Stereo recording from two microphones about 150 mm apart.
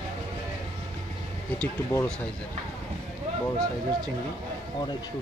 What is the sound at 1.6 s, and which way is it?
Speech, 20° left (ahead or behind).